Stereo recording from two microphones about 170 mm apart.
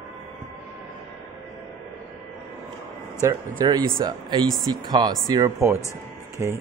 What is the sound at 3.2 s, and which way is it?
Speech, 25° right (ahead or behind).